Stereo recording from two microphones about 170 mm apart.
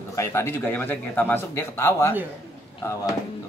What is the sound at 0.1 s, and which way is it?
A man's voice, 15° left (ahead or behind).